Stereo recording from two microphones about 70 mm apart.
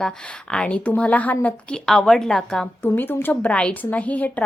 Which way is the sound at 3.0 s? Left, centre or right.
Left.